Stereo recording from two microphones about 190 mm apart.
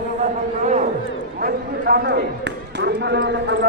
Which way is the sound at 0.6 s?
40° right (ahead or behind).